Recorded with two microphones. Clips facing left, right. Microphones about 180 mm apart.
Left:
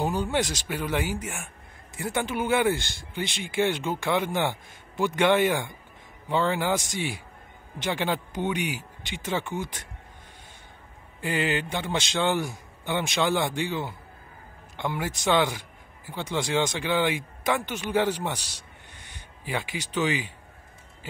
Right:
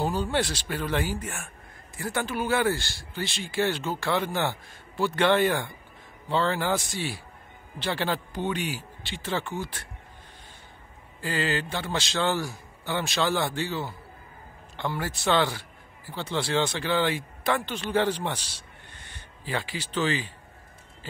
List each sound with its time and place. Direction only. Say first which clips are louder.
0.0 s a man's voice: even; 15° left (ahead or behind)
11.1 s a man's voice: left 1 dB; 20° left (ahead or behind)